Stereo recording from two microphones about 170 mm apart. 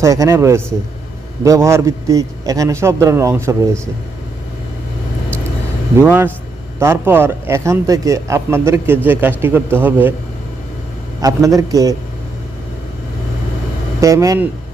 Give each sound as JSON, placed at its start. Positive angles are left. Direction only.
{"t": 0.0, "sound": "a man's voice", "side_deg": -20}
{"t": 6.1, "sound": "a man's voice", "side_deg": -10}
{"t": 11.2, "sound": "a man's voice", "side_deg": -20}
{"t": 14.0, "sound": "a man's voice", "side_deg": -20}